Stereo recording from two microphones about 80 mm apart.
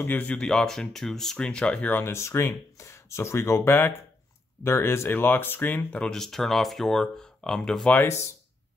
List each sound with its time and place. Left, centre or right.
0.0 s speech: left
0.4 s speech: centre
2.1 s speech: left; by 6.1 s centre
6.1 s speech: centre